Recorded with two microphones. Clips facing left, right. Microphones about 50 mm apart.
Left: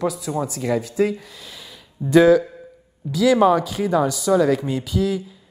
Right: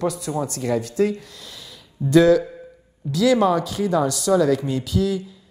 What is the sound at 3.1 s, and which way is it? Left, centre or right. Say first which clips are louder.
Speech: left 2 dB; centre.